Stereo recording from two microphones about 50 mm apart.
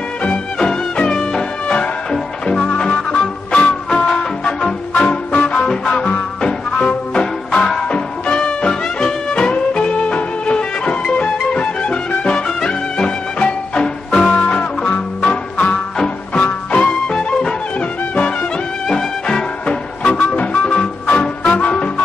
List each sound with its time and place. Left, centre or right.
0.2 s music: left
18.9 s music: centre